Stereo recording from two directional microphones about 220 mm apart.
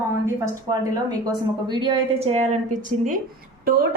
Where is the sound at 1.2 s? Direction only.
20° right (ahead or behind).